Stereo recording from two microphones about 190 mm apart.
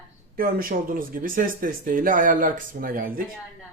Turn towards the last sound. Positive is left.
turn(degrees=-50)  # may be behind; listen again after turning